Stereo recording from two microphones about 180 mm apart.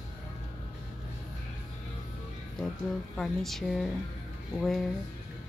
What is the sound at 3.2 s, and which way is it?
Speech, centre (ahead or behind).